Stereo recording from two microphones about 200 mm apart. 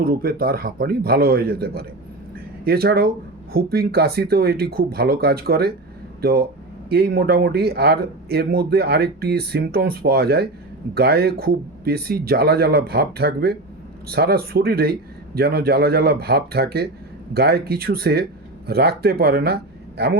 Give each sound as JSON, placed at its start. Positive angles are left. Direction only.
{"t": 0.0, "sound": "speech", "side_deg": -50}